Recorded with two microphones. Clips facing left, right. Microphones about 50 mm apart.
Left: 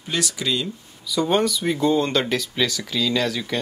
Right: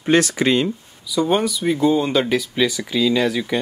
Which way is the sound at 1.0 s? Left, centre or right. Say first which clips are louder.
Right 2 dB; centre.